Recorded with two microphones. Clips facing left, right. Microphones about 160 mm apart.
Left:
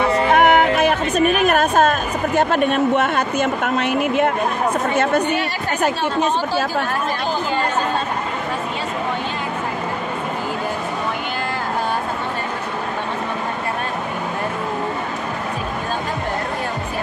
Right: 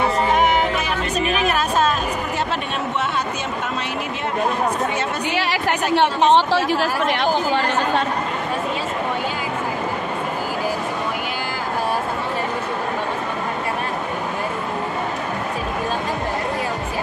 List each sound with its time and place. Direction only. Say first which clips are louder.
0.3 s music: left 4 dB; 60° left (ahead or behind)
5.2 s a woman's voice: even; 90° right